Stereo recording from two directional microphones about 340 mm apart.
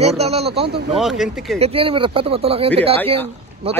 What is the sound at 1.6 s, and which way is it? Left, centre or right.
Speech, centre.